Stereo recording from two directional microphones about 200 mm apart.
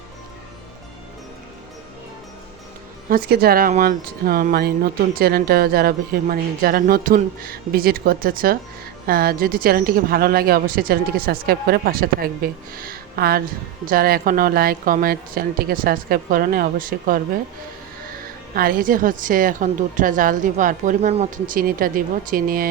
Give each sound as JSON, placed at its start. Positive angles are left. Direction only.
{"t": 3.1, "sound": "speech", "side_deg": -50}
{"t": 18.5, "sound": "speech", "side_deg": -45}